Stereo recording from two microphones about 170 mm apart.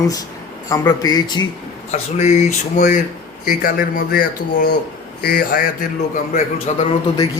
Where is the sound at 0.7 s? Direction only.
25° left (ahead or behind).